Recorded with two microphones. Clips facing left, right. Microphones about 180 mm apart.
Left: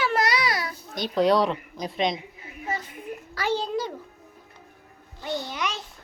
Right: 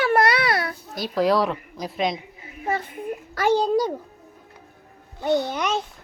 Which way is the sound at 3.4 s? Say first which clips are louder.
Right 7 dB; 50° right (ahead or behind).